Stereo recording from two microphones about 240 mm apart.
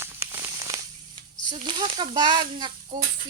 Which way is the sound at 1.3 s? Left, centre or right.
Right.